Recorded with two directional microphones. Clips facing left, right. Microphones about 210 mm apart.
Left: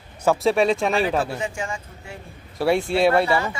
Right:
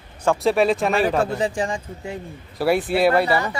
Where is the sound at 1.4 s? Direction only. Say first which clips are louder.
Right 6 dB; 35° right (ahead or behind).